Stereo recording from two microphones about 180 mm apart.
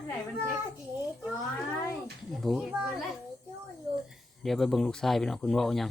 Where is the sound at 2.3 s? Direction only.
Centre (ahead or behind).